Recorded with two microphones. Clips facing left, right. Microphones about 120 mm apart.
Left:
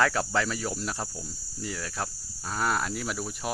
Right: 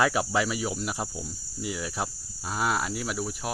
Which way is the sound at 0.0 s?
15° right (ahead or behind).